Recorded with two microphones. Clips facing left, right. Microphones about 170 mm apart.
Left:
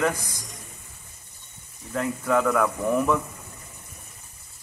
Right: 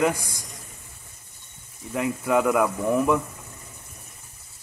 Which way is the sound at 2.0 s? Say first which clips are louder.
Right 1 dB; 15° right (ahead or behind).